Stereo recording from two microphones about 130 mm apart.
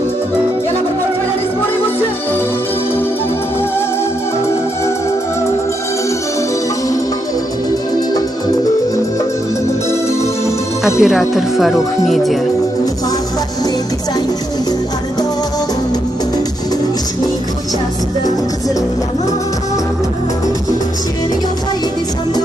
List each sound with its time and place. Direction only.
11.0 s speech: centre (ahead or behind)